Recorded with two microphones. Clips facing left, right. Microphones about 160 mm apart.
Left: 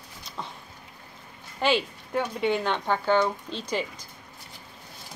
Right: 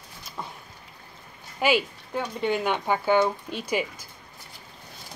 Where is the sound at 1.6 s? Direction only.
10° right (ahead or behind).